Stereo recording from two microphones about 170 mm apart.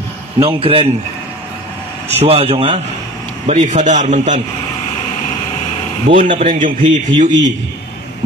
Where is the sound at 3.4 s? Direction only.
45° right (ahead or behind).